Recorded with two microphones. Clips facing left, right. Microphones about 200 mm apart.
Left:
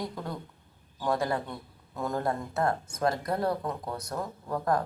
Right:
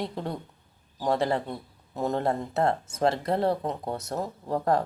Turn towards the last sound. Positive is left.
turn(degrees=-25)  # may be behind; listen again after turning